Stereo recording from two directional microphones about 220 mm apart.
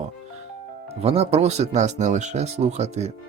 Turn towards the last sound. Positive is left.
turn(degrees=-30)  # may be behind; listen again after turning